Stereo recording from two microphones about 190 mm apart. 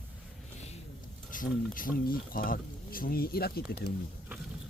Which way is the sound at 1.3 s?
45° left (ahead or behind).